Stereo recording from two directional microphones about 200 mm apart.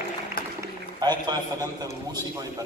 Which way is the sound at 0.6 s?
20° right (ahead or behind).